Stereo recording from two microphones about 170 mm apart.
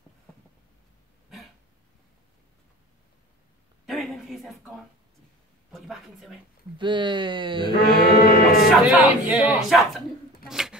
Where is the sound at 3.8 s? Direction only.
Centre (ahead or behind).